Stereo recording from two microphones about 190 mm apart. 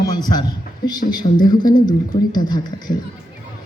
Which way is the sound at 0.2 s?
20° left (ahead or behind).